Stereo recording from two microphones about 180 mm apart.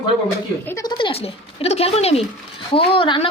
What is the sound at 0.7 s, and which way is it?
A woman's voice, 20° left (ahead or behind).